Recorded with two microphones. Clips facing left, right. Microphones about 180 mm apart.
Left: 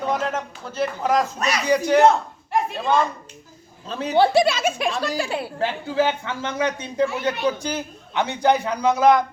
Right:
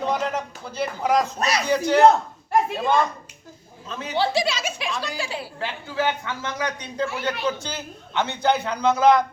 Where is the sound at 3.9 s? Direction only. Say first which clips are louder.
Left 6 dB; 35° left (ahead or behind).